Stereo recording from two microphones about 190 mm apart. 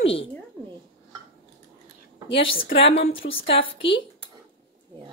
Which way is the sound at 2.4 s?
30° left (ahead or behind).